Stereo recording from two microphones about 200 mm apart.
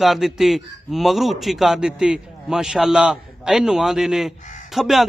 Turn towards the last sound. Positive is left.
turn(degrees=0)  # may be behind; listen again after turning